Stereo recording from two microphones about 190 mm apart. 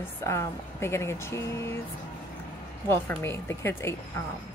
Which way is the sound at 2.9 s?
10° left (ahead or behind).